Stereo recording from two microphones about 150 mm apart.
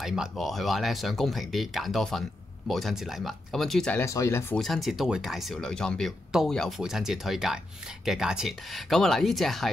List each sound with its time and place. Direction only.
0.0 s speech: 5° right (ahead or behind)
4.0 s speech: 20° left (ahead or behind)
4.6 s speech: centre (ahead or behind)